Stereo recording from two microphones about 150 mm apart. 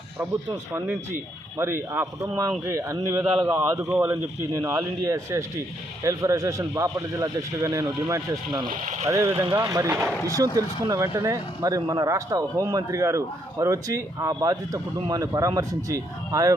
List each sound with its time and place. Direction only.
0.7 s speech: 15° right (ahead or behind)
8.7 s speech: 60° right (ahead or behind)
9.0 s speech: 20° right (ahead or behind)
9.3 s speech: 35° right (ahead or behind)
9.6 s speech: 20° right (ahead or behind)